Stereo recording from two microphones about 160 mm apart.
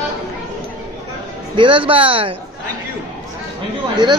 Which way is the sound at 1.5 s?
30° right (ahead or behind).